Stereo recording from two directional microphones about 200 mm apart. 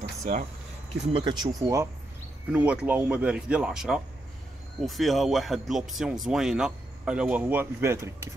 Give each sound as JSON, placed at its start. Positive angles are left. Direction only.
{"t": 0.2, "sound": "speech", "side_deg": -40}
{"t": 1.1, "sound": "speech", "side_deg": -20}